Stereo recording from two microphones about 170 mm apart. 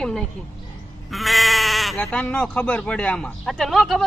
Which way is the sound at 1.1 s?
Centre (ahead or behind).